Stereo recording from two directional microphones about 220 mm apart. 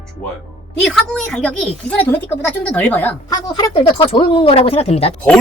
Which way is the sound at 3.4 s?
20° left (ahead or behind).